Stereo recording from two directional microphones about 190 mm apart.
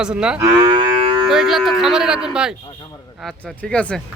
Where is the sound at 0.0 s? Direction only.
5° right (ahead or behind).